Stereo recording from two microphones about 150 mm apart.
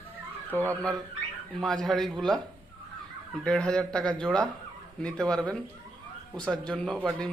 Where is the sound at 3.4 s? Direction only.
5° left (ahead or behind).